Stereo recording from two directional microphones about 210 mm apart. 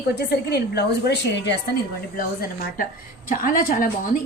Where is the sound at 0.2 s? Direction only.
50° left (ahead or behind).